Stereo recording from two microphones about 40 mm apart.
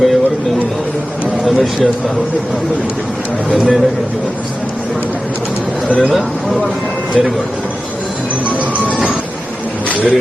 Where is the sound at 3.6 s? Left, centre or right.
Centre.